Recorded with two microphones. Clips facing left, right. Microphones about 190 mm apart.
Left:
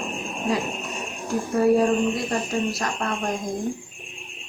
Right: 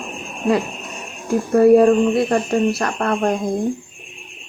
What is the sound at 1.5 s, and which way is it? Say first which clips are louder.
Speech: right 8 dB; 60° right (ahead or behind).